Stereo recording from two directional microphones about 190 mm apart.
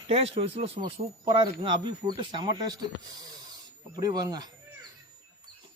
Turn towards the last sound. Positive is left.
turn(degrees=-20)  # may be behind; listen again after turning